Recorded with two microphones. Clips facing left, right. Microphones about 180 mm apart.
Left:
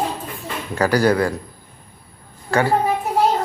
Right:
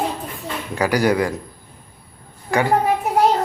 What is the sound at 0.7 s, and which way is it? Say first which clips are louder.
Speech: left 1 dB; 15° right (ahead or behind).